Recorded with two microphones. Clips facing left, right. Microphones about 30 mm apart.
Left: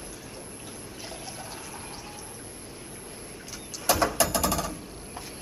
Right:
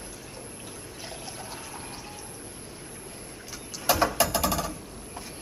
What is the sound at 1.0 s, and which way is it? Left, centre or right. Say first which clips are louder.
Water: even; centre.